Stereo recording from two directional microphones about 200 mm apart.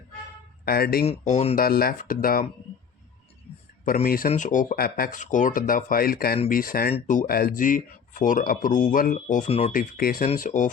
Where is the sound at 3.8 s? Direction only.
45° left (ahead or behind); by 9.7 s 30° left (ahead or behind).